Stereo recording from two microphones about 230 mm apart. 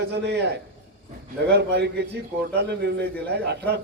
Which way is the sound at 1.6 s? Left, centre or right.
Right.